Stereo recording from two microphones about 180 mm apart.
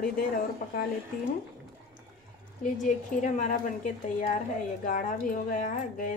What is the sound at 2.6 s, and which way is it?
Speech, 45° left (ahead or behind).